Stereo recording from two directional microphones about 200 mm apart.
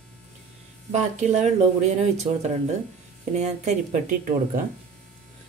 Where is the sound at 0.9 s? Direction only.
35° right (ahead or behind).